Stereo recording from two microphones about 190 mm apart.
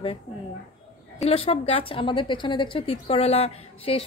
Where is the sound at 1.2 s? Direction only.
30° left (ahead or behind).